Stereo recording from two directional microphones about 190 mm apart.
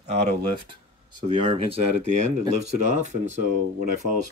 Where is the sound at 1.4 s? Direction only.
30° right (ahead or behind).